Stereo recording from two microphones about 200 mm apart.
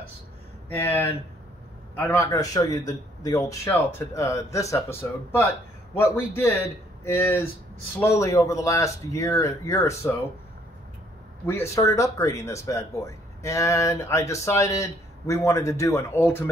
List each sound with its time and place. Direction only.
0.7 s speech: 10° left (ahead or behind)
2.1 s speech: 15° left (ahead or behind)
5.9 s speech: 10° left (ahead or behind)
11.4 s speech: 15° left (ahead or behind)